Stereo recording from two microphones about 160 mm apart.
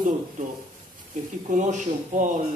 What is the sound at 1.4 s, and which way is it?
Speech, 50° right (ahead or behind).